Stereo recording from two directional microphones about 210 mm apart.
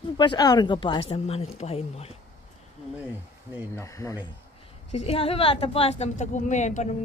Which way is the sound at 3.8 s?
15° left (ahead or behind).